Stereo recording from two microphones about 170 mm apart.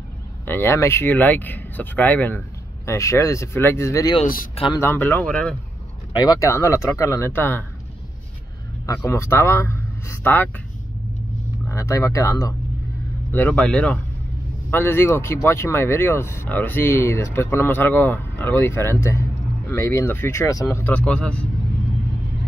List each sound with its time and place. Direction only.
0.5 s speech: 15° left (ahead or behind)
6.1 s speech: 25° left (ahead or behind)
8.8 s speech: 15° left (ahead or behind)
11.7 s speech: 15° left (ahead or behind)